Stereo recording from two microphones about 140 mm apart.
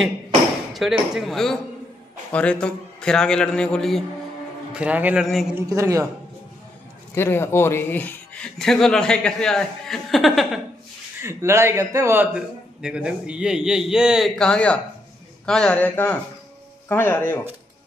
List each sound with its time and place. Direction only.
0.7 s speech: centre (ahead or behind)
4.7 s a man's voice: 10° right (ahead or behind)
5.2 s speech: centre (ahead or behind)
5.5 s a man's voice: 20° right (ahead or behind)
7.2 s speech: 15° left (ahead or behind); by 10.6 s centre (ahead or behind)
11.2 s a man's voice: 20° right (ahead or behind)
12.4 s speech: 5° right (ahead or behind); by 17.4 s 15° left (ahead or behind)